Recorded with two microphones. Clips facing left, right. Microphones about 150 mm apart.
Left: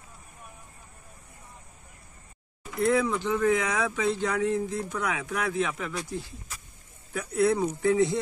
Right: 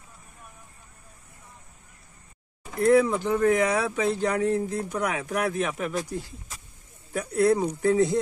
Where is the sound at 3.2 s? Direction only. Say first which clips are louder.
Right 3 dB; 35° right (ahead or behind).